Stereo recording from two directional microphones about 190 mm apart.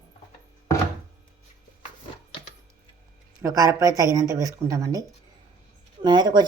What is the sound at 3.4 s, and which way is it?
A woman's voice, 15° right (ahead or behind).